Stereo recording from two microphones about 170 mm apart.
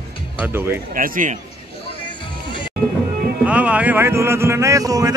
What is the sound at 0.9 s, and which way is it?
Speech, 55° right (ahead or behind).